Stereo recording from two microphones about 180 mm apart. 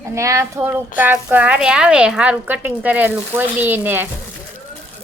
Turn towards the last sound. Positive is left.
turn(degrees=-10)  # may be behind; listen again after turning